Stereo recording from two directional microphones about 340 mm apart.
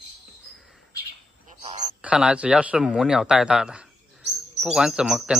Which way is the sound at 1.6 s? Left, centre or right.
Right.